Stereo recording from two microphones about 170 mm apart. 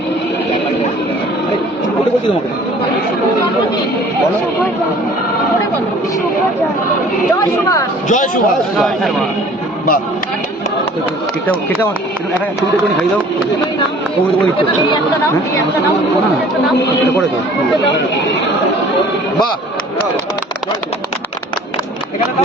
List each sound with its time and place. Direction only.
7.3 s a woman's voice: 20° left (ahead or behind)
8.0 s speech: 45° left (ahead or behind)
8.7 s a man's voice: centre (ahead or behind)